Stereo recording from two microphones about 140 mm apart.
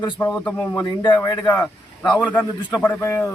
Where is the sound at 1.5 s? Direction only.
10° left (ahead or behind).